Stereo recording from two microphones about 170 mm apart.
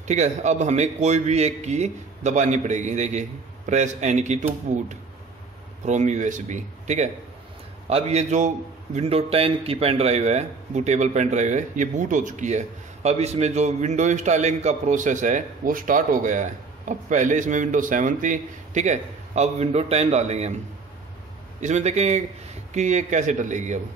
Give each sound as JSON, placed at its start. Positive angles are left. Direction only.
{"t": 0.1, "sound": "a man's voice", "side_deg": -40}
{"t": 21.5, "sound": "a man's voice", "side_deg": -45}